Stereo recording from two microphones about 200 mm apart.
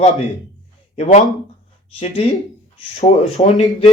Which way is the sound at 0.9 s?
30° left (ahead or behind).